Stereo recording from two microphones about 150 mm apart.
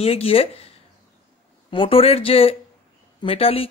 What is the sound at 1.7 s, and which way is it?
Speech, 35° left (ahead or behind).